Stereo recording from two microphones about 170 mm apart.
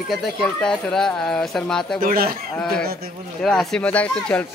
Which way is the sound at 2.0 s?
55° right (ahead or behind).